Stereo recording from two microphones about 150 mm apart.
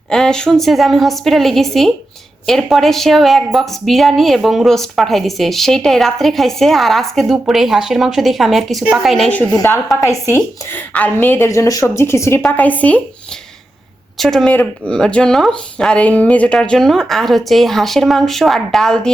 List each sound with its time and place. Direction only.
0.1 s a woman's voice: 5° left (ahead or behind)
9.3 s a woman's voice: 10° left (ahead or behind)
14.2 s a woman's voice: centre (ahead or behind)